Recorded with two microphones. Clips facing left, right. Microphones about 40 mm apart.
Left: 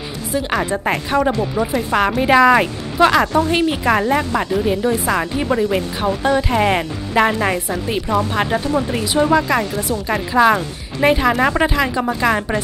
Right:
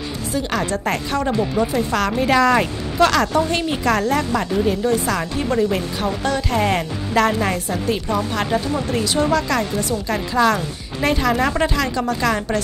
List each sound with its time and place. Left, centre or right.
0.3 s speech: centre